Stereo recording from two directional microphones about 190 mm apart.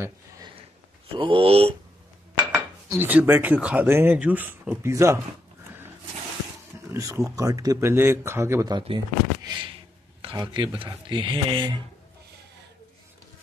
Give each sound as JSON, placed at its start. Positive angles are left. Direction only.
{"t": 1.1, "sound": "speech", "side_deg": -25}
{"t": 2.9, "sound": "speech", "side_deg": -10}
{"t": 6.9, "sound": "speech", "side_deg": -15}